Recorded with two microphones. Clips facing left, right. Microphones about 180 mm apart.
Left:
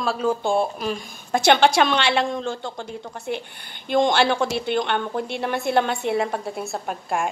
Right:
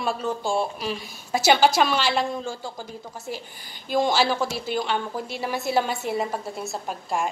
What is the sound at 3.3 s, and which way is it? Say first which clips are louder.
Speech: left 7 dB; 65° left (ahead or behind).